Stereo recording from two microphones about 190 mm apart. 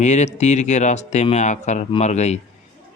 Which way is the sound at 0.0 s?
40° left (ahead or behind).